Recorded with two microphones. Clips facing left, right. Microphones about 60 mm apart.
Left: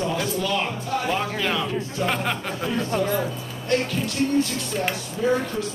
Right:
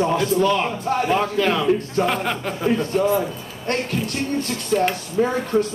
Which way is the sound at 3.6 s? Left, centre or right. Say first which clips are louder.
Even; right.